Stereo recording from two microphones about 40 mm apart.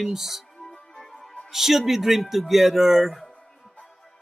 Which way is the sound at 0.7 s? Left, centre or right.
Centre.